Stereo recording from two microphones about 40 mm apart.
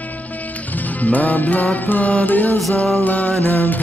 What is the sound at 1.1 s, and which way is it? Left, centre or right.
Music, left.